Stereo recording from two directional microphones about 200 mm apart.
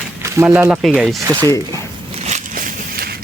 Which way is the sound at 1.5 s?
15° left (ahead or behind).